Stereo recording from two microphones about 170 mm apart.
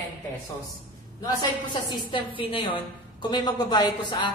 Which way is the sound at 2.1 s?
30° left (ahead or behind).